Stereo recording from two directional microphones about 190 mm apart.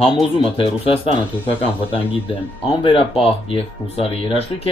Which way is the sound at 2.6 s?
30° left (ahead or behind).